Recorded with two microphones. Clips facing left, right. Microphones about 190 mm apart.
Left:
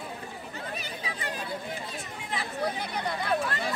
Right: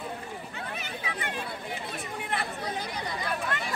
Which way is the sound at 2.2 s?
60° right (ahead or behind).